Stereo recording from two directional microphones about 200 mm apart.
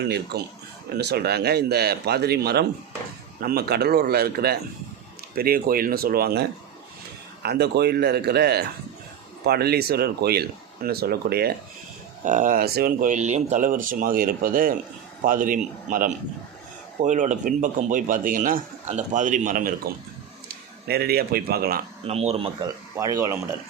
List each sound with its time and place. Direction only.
0.0 s speech: 55° right (ahead or behind)
12.2 s speech: 40° right (ahead or behind)
22.0 s speech: 30° right (ahead or behind)
23.0 s speech: 15° right (ahead or behind)